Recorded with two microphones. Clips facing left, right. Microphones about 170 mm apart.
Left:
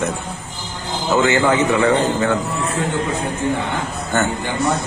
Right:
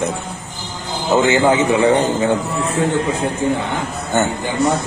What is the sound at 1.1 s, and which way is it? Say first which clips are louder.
A man's voice: right 2 dB; 20° right (ahead or behind).